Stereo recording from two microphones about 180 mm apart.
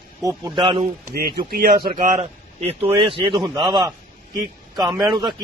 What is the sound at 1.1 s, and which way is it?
Speech, 55° right (ahead or behind).